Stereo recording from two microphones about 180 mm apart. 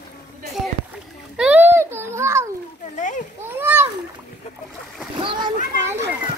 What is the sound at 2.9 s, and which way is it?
Speech, 45° left (ahead or behind).